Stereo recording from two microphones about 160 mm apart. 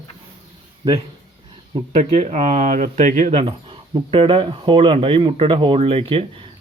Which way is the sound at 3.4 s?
35° right (ahead or behind).